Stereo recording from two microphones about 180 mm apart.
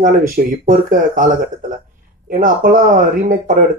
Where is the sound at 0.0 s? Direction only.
50° right (ahead or behind).